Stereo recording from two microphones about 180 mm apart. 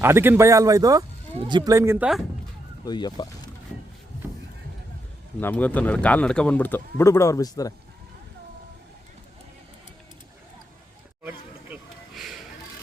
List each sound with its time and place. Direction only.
0.0 s speech: 15° right (ahead or behind)
2.8 s speech: 25° left (ahead or behind)
5.4 s speech: 10° left (ahead or behind)
11.2 s a sound: 10° right (ahead or behind)